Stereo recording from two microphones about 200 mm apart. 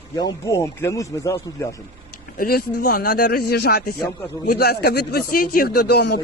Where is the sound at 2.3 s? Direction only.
50° left (ahead or behind).